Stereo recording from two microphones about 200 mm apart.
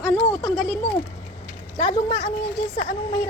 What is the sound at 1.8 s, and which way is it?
Speech, 20° left (ahead or behind).